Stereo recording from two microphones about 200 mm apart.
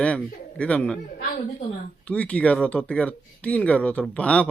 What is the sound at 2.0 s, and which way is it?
Speech, 5° left (ahead or behind).